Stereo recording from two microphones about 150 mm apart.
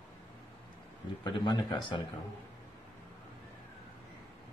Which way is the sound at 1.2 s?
30° left (ahead or behind).